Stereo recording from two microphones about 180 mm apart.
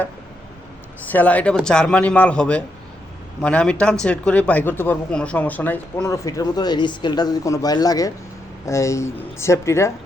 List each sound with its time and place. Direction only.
1.1 s a man's voice: 10° left (ahead or behind)